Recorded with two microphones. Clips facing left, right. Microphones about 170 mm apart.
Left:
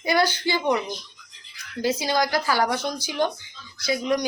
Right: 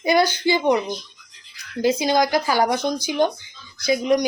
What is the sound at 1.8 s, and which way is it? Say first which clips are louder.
Speech: right 5 dB; 20° right (ahead or behind).